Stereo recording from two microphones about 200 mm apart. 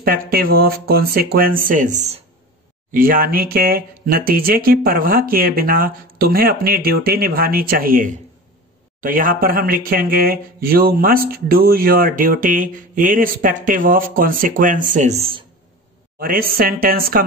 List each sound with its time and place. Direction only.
0.0 s speech: 45° right (ahead or behind)
2.9 s speech: 45° right (ahead or behind)
16.2 s speech: 45° right (ahead or behind)